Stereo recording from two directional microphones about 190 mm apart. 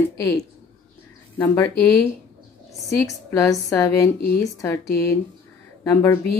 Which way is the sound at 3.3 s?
15° left (ahead or behind).